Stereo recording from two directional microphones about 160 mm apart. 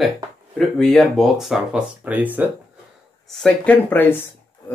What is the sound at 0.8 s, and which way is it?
Speech, 5° left (ahead or behind).